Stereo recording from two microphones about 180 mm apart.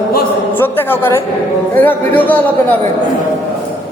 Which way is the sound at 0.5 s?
10° left (ahead or behind).